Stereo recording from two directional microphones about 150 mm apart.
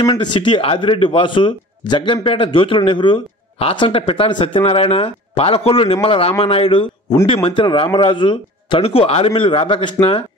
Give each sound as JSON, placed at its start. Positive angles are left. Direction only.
{"t": 0.0, "sound": "speech", "side_deg": 30}